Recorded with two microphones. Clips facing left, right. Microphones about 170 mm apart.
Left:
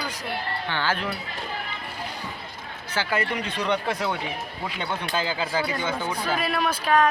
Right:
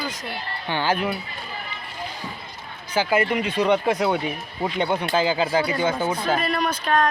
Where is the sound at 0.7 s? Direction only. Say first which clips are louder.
Right 5 dB; 15° right (ahead or behind).